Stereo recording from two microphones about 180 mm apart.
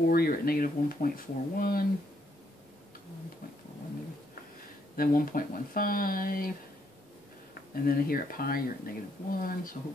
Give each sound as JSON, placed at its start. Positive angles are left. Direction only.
{"t": 0.1, "sound": "speech", "side_deg": 55}
{"t": 4.9, "sound": "speech", "side_deg": 50}
{"t": 7.7, "sound": "speech", "side_deg": 55}